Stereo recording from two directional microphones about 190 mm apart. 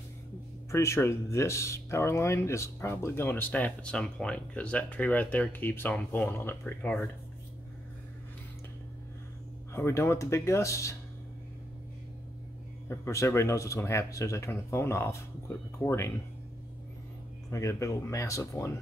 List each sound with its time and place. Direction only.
0.7 s speech: 15° left (ahead or behind)
9.8 s speech: 15° left (ahead or behind)
12.8 s speech: 15° left (ahead or behind)
17.5 s speech: 15° left (ahead or behind)